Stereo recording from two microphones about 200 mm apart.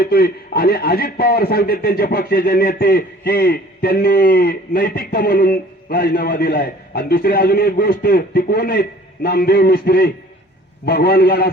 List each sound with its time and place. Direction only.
0.0 s a man's voice: 50° left (ahead or behind)